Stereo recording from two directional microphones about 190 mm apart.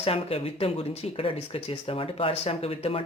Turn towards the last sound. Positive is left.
turn(degrees=30)  # may be behind; listen again after turning